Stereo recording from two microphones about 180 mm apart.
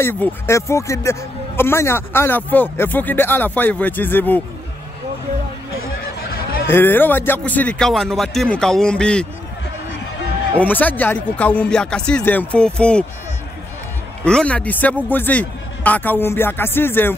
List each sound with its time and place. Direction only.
0.0 s speech: 10° left (ahead or behind)
6.7 s speech: 10° left (ahead or behind)
10.6 s speech: 10° left (ahead or behind)
14.2 s speech: 5° left (ahead or behind)